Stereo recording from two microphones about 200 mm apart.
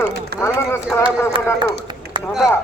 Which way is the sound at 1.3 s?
25° right (ahead or behind).